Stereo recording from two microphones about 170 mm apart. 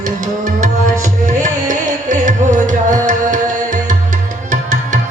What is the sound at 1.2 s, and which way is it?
Music, 50° right (ahead or behind).